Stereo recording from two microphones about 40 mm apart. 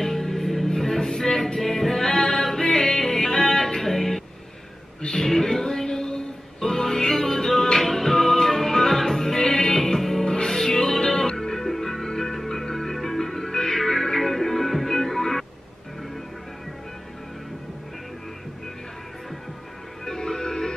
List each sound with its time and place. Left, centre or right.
0.0 s music: centre
5.2 s music: centre
20.1 s music: centre